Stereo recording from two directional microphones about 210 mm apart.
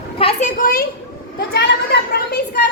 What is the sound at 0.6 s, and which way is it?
Speech, 45° left (ahead or behind).